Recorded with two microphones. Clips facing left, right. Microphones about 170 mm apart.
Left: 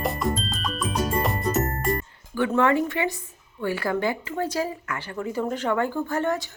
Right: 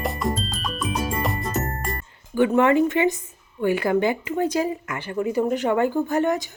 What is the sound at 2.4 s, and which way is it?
Speech, 15° right (ahead or behind).